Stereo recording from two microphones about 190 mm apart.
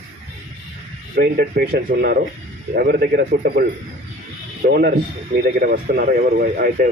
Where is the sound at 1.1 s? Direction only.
55° right (ahead or behind).